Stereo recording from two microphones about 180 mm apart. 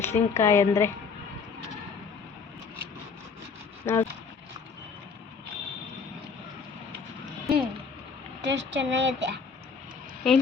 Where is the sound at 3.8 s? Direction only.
15° left (ahead or behind).